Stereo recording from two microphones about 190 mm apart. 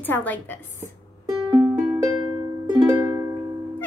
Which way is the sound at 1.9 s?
20° right (ahead or behind).